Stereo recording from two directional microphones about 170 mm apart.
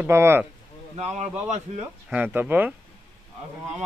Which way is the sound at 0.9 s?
40° right (ahead or behind).